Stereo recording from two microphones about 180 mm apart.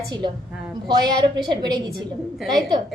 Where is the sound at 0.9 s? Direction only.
25° right (ahead or behind).